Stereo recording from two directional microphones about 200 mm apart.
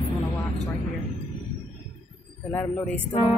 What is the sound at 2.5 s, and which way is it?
Speech, 5° left (ahead or behind).